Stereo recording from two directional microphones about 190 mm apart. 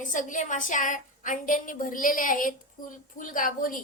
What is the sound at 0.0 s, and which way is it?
A woman's voice, 40° left (ahead or behind).